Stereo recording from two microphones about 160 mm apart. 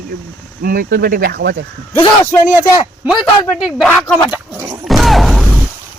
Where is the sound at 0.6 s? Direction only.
65° right (ahead or behind); by 1.5 s 85° right.